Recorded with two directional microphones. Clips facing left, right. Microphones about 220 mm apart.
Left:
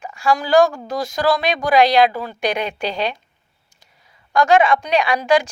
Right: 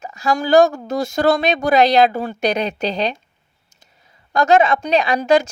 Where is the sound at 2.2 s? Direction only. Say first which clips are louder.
Right 3 dB; 40° right (ahead or behind).